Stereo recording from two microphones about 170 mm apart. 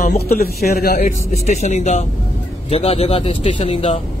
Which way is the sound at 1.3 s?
45° left (ahead or behind).